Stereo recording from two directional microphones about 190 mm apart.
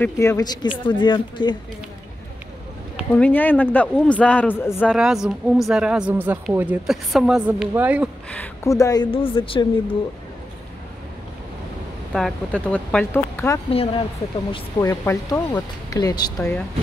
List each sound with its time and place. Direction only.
0.0 s a man's voice: 15° left (ahead or behind)
3.2 s a man's voice: 10° left (ahead or behind)
4.9 s speech: 5° right (ahead or behind)
8.3 s speech: 10° left (ahead or behind)
12.1 s a man's voice: centre (ahead or behind)
13.7 s speech: 30° left (ahead or behind)
14.5 s speech: 15° left (ahead or behind)